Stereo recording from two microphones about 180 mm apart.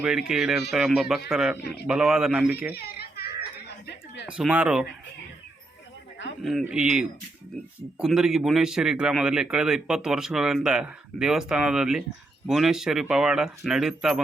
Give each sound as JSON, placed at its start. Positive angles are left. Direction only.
{"t": 0.3, "sound": "a man's voice", "side_deg": -5}
{"t": 1.5, "sound": "speech", "side_deg": 65}
{"t": 1.9, "sound": "a man's voice", "side_deg": -5}
{"t": 2.7, "sound": "children playing", "side_deg": 60}
{"t": 3.8, "sound": "a sound", "side_deg": 75}
{"t": 4.3, "sound": "a man's voice", "side_deg": -5}
{"t": 6.4, "sound": "a man's voice", "side_deg": 0}